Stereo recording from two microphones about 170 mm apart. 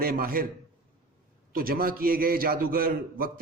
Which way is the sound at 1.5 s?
60° right (ahead or behind).